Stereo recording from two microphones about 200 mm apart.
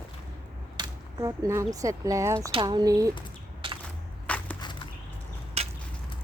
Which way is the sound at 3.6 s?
25° right (ahead or behind).